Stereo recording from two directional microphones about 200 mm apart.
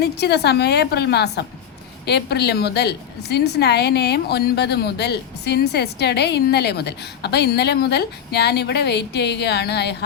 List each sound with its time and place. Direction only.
0.0 s a woman's voice: 55° left (ahead or behind)